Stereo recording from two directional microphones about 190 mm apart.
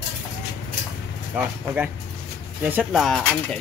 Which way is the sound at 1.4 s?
10° right (ahead or behind).